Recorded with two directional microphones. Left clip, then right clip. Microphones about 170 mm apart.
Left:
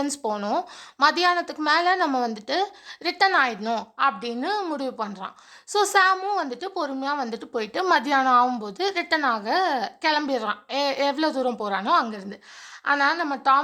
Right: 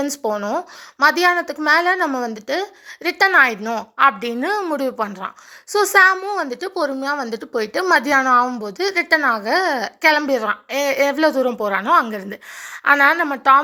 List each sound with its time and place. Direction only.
0.1 s a woman's voice: 10° right (ahead or behind)
3.6 s a woman's voice: centre (ahead or behind)
3.9 s a woman's voice: 25° right (ahead or behind)
12.8 s a woman's voice: 25° right (ahead or behind)